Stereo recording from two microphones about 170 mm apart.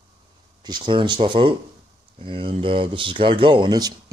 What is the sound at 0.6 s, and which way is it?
Speech, 25° right (ahead or behind).